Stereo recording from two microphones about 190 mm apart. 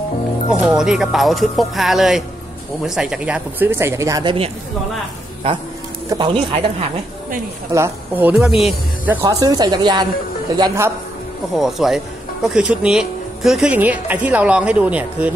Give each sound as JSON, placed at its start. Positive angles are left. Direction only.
{"t": 0.5, "sound": "speech", "side_deg": -5}
{"t": 6.0, "sound": "a woman's voice", "side_deg": -25}
{"t": 7.7, "sound": "speech", "side_deg": -10}
{"t": 9.4, "sound": "a woman's voice", "side_deg": -20}
{"t": 11.6, "sound": "speech", "side_deg": 0}